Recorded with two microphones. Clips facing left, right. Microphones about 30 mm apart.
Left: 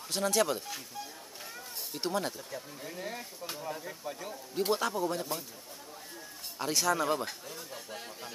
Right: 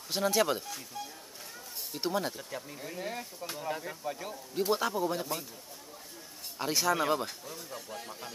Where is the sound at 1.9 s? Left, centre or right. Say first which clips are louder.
Right 1 dB; centre.